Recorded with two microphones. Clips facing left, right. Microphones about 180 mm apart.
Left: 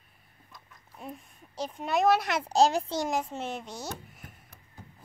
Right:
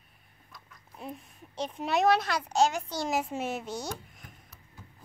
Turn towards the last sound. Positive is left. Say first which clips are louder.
# right 2 dB
turn(degrees=0)  # may be behind; listen again after turning